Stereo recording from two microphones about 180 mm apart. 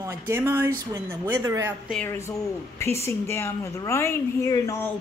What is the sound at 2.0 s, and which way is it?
A woman's voice, 15° left (ahead or behind).